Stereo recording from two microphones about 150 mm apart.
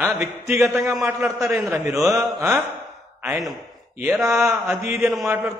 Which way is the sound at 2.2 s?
20° right (ahead or behind).